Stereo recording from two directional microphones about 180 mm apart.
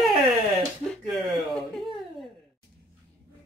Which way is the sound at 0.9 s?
Centre (ahead or behind).